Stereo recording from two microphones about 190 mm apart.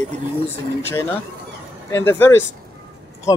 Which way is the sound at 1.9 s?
10° left (ahead or behind).